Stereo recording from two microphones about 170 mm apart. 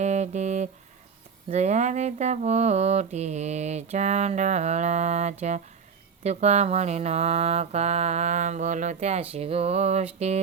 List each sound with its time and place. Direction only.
0.0 s music: 40° right (ahead or behind)
1.5 s mantra: 45° right (ahead or behind)